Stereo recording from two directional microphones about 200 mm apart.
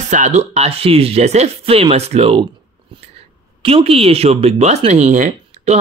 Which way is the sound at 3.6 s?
30° right (ahead or behind).